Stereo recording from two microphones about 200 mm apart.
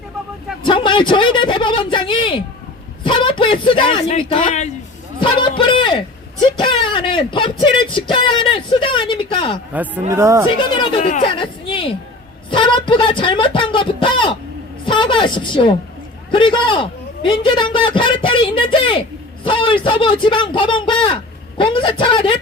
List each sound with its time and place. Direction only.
0.6 s a man's voice: 25° left (ahead or behind)
5.2 s a man's voice: 25° left (ahead or behind)
9.7 s speech: 10° right (ahead or behind)
11.2 s a man's voice: 25° left (ahead or behind)